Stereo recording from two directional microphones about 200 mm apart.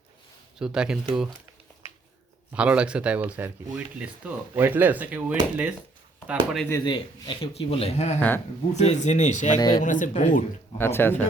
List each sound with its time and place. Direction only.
0.6 s speech: 5° right (ahead or behind)
2.5 s speech: 5° right (ahead or behind)
6.7 s speech: 20° left (ahead or behind); by 9.6 s 35° left (ahead or behind)
9.6 s speech: 20° left (ahead or behind)
9.8 s speech: 40° left (ahead or behind)
10.8 s speech: 10° left (ahead or behind)